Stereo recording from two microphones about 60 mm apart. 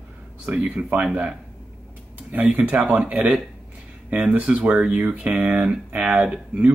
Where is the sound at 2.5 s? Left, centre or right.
Right.